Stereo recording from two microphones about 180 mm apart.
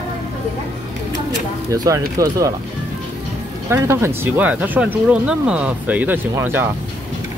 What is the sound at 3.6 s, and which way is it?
Speech, 15° right (ahead or behind).